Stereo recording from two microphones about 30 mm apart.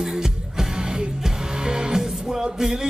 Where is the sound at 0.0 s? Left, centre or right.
Centre.